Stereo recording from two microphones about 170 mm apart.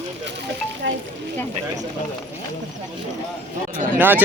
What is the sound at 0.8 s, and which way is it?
Speech, 90° right.